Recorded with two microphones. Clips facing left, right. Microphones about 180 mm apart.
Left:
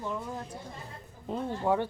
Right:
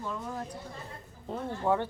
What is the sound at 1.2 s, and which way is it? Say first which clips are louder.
Speech: left 1 dB; 15° left (ahead or behind).